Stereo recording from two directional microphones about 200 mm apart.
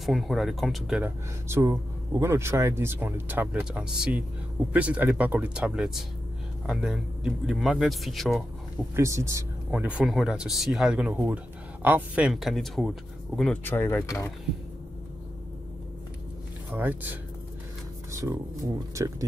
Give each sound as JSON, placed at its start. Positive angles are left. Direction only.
{"t": 0.0, "sound": "speech", "side_deg": 0}
{"t": 8.9, "sound": "speech", "side_deg": -15}
{"t": 16.7, "sound": "speech", "side_deg": -10}